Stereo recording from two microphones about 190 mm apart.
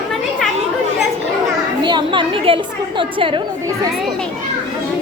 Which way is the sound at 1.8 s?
25° right (ahead or behind).